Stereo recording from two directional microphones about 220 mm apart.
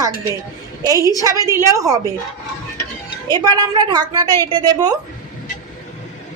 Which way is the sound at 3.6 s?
20° right (ahead or behind).